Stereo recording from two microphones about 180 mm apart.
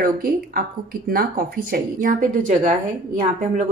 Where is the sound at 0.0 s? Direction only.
55° right (ahead or behind).